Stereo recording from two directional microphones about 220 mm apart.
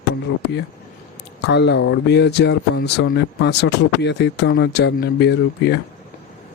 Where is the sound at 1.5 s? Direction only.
50° left (ahead or behind).